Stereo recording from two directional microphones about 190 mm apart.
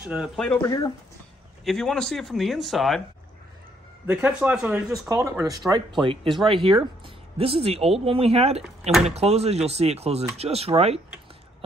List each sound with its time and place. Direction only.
0.0 s speech: 5° right (ahead or behind)
0.6 s speech: 20° left (ahead or behind)
1.6 s speech: centre (ahead or behind)
4.1 s speech: 5° right (ahead or behind); by 11.0 s 35° right (ahead or behind)